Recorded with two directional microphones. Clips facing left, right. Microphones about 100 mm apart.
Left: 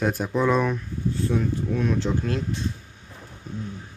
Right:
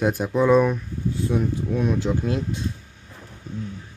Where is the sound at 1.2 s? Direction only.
15° right (ahead or behind).